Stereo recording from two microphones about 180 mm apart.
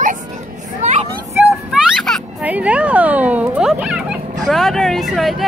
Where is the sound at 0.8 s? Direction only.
40° right (ahead or behind).